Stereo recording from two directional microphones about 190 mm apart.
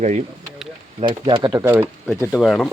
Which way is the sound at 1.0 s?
25° right (ahead or behind).